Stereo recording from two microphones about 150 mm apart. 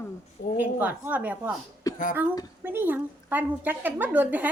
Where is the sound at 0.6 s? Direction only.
10° right (ahead or behind).